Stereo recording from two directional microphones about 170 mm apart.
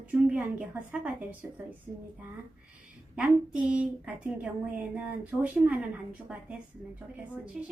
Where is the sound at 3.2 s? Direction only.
5° right (ahead or behind).